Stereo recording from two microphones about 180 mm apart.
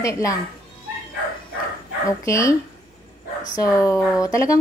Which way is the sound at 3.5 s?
20° left (ahead or behind).